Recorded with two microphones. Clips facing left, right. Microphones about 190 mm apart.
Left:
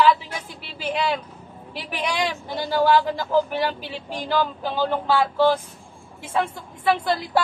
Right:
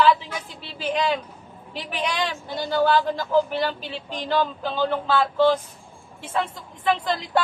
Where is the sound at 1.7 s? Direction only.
10° left (ahead or behind).